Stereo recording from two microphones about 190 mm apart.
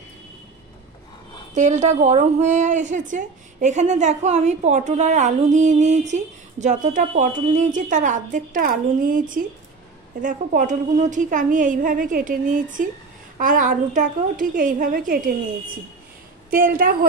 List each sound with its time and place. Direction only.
1.5 s a woman's voice: 40° right (ahead or behind)
10.2 s a woman's voice: 45° right (ahead or behind)
16.4 s a woman's voice: 50° right (ahead or behind)